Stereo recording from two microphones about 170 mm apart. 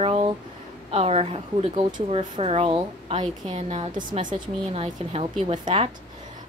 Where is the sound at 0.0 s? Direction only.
35° right (ahead or behind).